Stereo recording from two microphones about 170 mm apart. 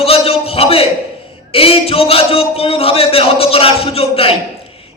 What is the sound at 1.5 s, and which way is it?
Speech, 35° left (ahead or behind).